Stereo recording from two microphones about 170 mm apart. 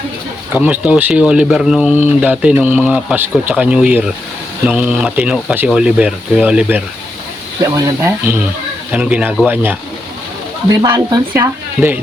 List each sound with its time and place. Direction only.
0.5 s speech: 10° right (ahead or behind)
7.6 s speech: 20° right (ahead or behind)
8.9 s speech: 5° right (ahead or behind)
10.7 s speech: 15° right (ahead or behind)